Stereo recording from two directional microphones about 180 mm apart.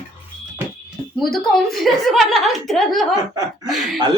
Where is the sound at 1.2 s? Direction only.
Centre (ahead or behind).